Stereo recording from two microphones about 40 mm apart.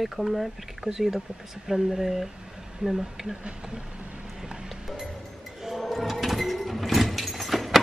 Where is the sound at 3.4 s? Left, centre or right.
Right.